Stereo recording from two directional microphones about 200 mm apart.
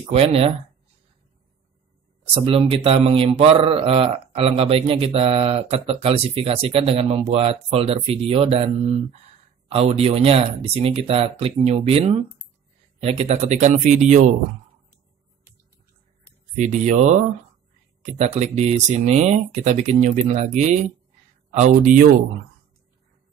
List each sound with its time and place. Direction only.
0.0 s speech: 30° right (ahead or behind)
2.3 s speech: 25° right (ahead or behind)
16.5 s speech: 35° right (ahead or behind)